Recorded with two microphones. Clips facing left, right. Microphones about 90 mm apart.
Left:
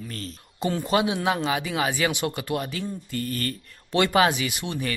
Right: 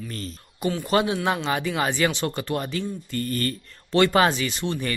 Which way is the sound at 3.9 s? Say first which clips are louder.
Right 2 dB; 15° left (ahead or behind).